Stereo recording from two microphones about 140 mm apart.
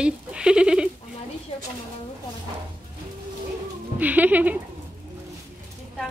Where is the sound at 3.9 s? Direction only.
10° right (ahead or behind).